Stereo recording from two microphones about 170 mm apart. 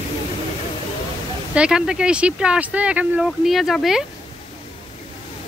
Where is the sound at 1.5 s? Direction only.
5° right (ahead or behind).